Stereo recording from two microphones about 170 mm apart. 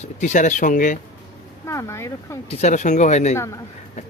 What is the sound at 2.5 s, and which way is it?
Speech, 40° left (ahead or behind).